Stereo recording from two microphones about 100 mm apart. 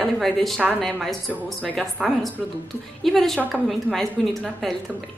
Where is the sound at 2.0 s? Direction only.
10° right (ahead or behind).